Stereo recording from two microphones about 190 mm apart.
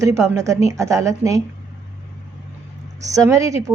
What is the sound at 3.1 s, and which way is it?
Speech, 15° right (ahead or behind).